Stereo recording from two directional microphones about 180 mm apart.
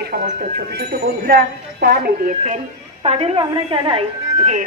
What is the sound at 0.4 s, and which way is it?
Speech, 50° right (ahead or behind).